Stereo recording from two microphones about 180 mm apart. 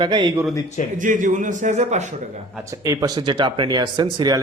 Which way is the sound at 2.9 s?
20° right (ahead or behind).